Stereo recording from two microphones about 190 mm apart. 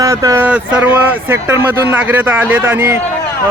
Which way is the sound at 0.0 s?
15° right (ahead or behind).